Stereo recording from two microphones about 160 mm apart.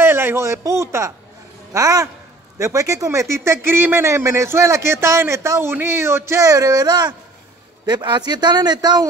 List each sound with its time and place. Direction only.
0.0 s a man's voice: 15° right (ahead or behind)